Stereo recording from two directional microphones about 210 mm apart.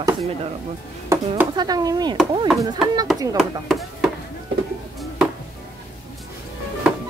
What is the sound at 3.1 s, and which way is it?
Speech, 15° right (ahead or behind).